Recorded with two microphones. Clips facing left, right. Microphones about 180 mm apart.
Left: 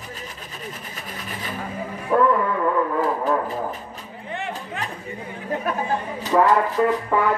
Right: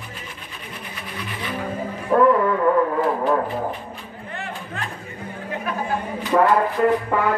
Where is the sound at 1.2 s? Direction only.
45° left (ahead or behind).